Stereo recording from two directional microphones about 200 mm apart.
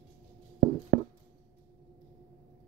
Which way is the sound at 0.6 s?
50° right (ahead or behind).